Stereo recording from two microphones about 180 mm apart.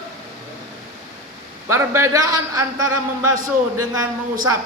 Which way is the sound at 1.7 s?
15° right (ahead or behind).